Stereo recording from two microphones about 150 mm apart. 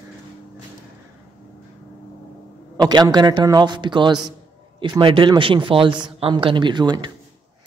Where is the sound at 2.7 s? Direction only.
25° right (ahead or behind).